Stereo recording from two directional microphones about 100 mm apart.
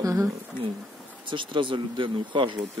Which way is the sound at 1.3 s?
55° right (ahead or behind).